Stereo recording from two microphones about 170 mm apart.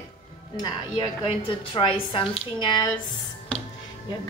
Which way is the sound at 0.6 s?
25° left (ahead or behind).